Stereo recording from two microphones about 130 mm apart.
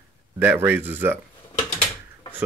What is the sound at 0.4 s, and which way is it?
Speech, 15° right (ahead or behind).